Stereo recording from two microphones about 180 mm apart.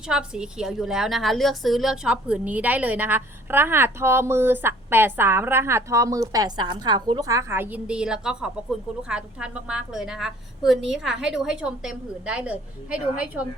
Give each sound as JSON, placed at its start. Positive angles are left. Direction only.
{"t": 0.1, "sound": "a woman's voice", "side_deg": -5}